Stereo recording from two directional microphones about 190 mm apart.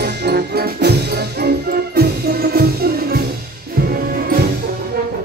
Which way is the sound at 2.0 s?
55° right (ahead or behind).